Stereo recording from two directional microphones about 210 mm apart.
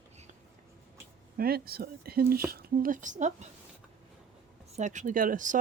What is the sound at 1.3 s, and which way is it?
Speech, 45° right (ahead or behind).